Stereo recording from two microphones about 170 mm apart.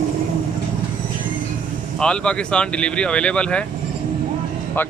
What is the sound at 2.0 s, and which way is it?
Speech, 5° left (ahead or behind).